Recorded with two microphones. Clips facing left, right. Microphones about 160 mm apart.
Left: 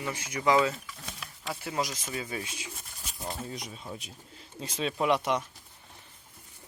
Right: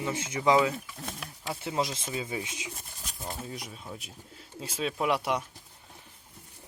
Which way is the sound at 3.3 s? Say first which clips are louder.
Left 1 dB; 5° right (ahead or behind).